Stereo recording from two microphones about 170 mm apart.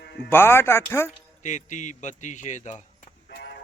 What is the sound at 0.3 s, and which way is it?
Speech, 15° left (ahead or behind).